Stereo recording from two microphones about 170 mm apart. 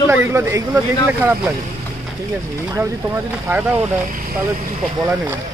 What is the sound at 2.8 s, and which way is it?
Speech, 15° right (ahead or behind).